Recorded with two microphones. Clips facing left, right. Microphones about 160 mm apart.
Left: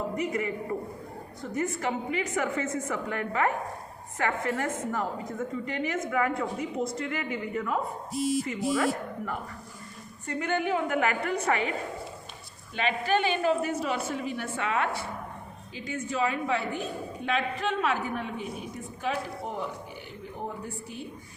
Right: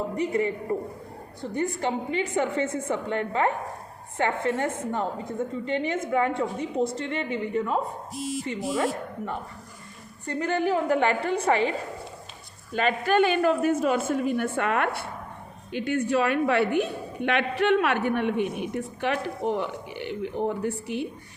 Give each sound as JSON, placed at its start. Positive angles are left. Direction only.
{"t": 0.2, "sound": "a woman's voice", "side_deg": -30}
{"t": 12.7, "sound": "a woman's voice", "side_deg": -50}